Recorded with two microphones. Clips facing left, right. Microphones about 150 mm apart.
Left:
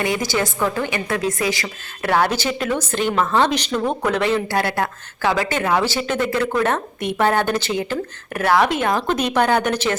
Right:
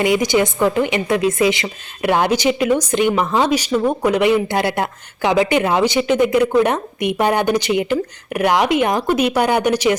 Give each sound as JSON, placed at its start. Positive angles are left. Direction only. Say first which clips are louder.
{"t": 0.0, "sound": "a woman's voice", "louder": "right 6 dB", "side_deg": -20}